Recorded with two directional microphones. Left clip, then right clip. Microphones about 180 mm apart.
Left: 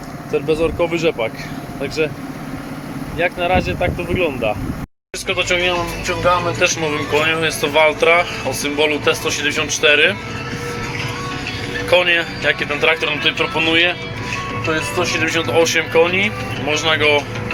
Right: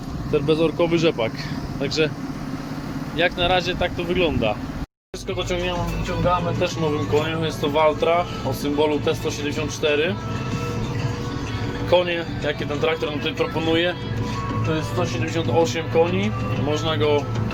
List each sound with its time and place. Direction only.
0.3 s speech: 5° right (ahead or behind)
3.2 s speech: 5° right (ahead or behind)
11.9 s speech: 10° right (ahead or behind)
15.2 s speech: 5° right (ahead or behind)